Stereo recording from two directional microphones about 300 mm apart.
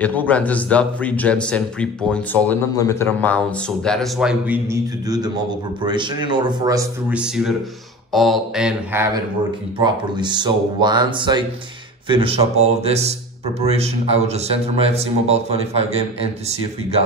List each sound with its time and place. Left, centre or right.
0.0 s a man's voice: centre; by 15.8 s right